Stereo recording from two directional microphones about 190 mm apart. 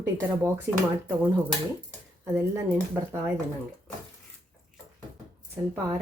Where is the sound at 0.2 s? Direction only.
10° right (ahead or behind).